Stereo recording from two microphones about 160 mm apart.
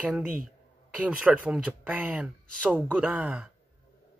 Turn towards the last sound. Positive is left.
turn(degrees=-10)  # may be behind; listen again after turning